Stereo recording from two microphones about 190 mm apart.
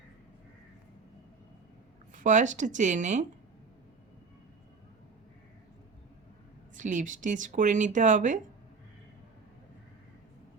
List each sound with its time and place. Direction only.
2.1 s speech: 40° right (ahead or behind)
6.7 s speech: 40° right (ahead or behind)